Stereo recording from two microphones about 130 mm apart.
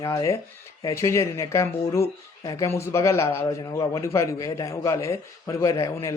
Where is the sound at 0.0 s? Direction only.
25° left (ahead or behind).